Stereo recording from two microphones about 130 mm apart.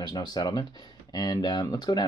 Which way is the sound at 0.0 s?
30° left (ahead or behind).